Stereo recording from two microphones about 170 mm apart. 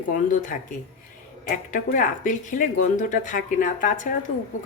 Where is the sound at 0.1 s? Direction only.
50° left (ahead or behind).